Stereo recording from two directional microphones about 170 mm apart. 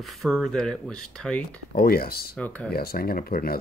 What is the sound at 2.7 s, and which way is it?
Speech, 65° left (ahead or behind).